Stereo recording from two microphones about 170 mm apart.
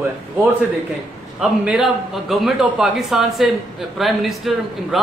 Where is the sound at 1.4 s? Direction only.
5° right (ahead or behind).